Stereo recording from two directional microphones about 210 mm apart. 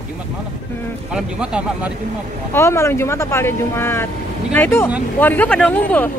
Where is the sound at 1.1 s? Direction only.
5° right (ahead or behind).